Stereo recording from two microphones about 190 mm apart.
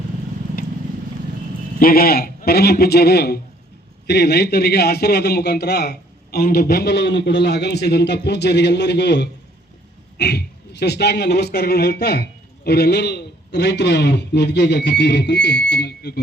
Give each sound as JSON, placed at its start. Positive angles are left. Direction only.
{"t": 1.8, "sound": "a man's voice", "side_deg": 50}